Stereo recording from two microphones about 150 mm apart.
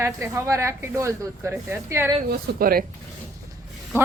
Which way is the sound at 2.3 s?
80° right.